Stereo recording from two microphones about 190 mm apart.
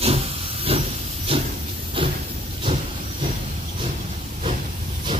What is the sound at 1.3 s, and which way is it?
Hiss, 30° right (ahead or behind).